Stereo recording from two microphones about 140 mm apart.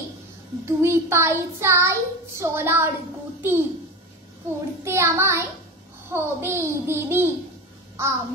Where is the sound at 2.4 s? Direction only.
15° right (ahead or behind).